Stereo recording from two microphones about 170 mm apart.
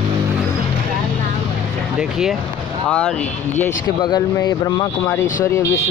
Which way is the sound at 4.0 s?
25° left (ahead or behind).